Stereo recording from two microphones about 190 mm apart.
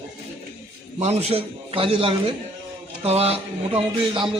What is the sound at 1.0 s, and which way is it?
A man's voice, 35° right (ahead or behind).